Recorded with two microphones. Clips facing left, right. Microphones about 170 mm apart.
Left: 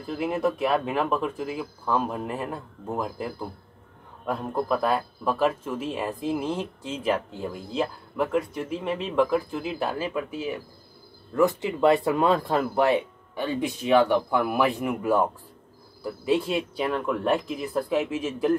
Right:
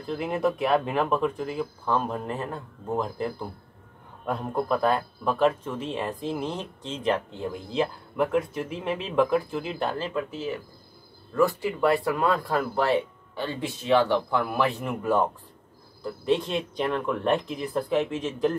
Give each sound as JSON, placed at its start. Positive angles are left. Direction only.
{"t": 0.0, "sound": "speech", "side_deg": 5}